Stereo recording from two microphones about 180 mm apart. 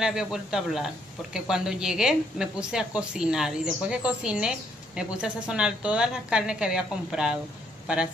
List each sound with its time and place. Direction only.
0.0 s a woman's voice: 5° right (ahead or behind)